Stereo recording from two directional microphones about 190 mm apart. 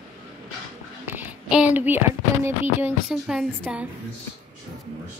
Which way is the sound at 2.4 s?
5° right (ahead or behind).